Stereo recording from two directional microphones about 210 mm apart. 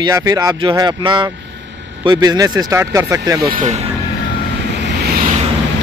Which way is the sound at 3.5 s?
35° right (ahead or behind).